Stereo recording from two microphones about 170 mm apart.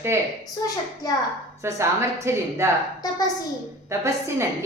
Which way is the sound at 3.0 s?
20° left (ahead or behind).